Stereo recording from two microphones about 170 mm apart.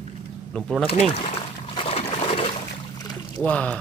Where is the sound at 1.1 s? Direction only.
40° left (ahead or behind).